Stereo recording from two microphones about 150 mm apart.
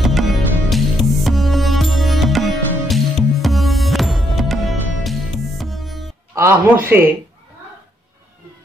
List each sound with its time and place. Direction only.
0.0 s music: centre (ahead or behind)
6.3 s a man's voice: 15° right (ahead or behind)